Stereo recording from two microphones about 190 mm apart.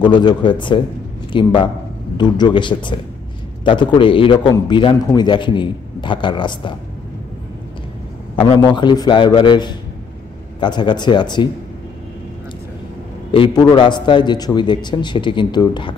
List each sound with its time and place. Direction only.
0.0 s a man's voice: 25° left (ahead or behind)
8.4 s a man's voice: 25° left (ahead or behind)
13.3 s a man's voice: 25° left (ahead or behind)